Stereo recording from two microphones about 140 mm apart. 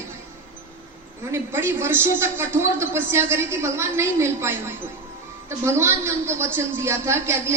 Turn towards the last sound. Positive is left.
turn(degrees=-20)  # may be behind; listen again after turning